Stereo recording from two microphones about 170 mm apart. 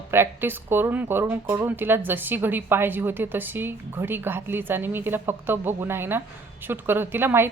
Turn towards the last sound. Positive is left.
turn(degrees=-10)  # may be behind; listen again after turning